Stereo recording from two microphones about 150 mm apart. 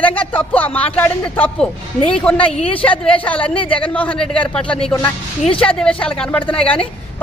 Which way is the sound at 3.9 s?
10° left (ahead or behind).